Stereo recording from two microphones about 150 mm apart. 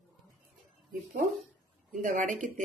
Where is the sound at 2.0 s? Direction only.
60° right (ahead or behind).